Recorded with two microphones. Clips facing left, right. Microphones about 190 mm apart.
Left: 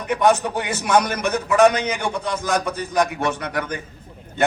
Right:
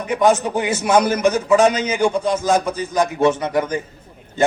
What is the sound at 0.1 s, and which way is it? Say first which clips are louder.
A man's voice: right 2 dB; 60° left (ahead or behind).